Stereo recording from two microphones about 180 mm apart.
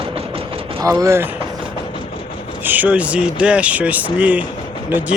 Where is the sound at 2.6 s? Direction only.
10° right (ahead or behind).